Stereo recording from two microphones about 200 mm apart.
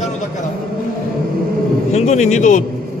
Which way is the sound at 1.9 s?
35° left (ahead or behind).